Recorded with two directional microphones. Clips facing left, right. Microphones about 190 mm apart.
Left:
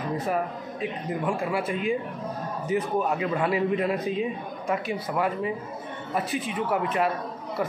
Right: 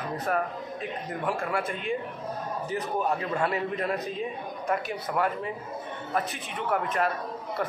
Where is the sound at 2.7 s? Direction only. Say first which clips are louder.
Left 7 dB; 35° right (ahead or behind).